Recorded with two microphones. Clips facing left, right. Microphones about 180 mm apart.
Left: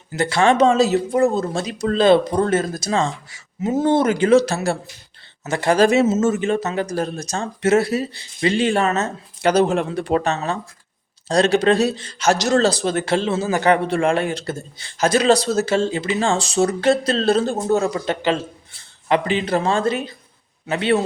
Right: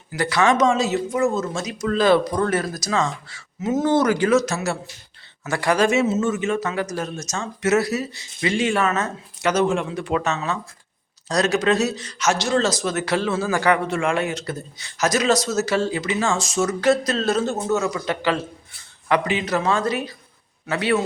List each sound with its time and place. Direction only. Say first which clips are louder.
0.2 s speech: left 3 dB; 25° left (ahead or behind)
3.7 s speech: left 1 dB; 30° left (ahead or behind)